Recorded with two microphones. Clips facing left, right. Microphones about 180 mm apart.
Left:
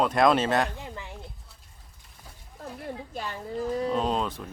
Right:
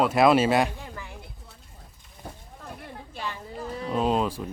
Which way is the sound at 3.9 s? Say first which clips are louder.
Right 3 dB; 5° right (ahead or behind).